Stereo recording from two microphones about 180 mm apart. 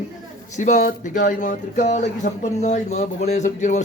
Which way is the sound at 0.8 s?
55° left (ahead or behind).